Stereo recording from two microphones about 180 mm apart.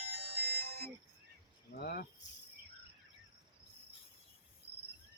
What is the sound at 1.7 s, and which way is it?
Speech, 60° left (ahead or behind).